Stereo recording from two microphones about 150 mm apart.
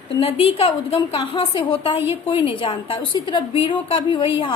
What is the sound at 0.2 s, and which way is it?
A woman's voice, 40° left (ahead or behind).